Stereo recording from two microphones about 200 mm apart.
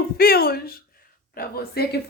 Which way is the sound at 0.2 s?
50° left (ahead or behind).